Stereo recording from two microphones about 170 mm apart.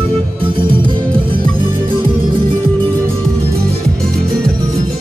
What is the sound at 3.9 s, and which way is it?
Music, centre (ahead or behind).